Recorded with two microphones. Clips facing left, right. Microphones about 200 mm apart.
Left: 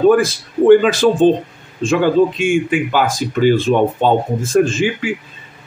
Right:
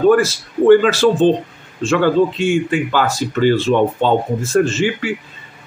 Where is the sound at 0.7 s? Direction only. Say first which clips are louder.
Left 1 dB; 15° left (ahead or behind).